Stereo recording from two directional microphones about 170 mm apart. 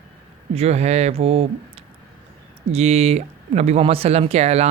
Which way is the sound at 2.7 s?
40° right (ahead or behind).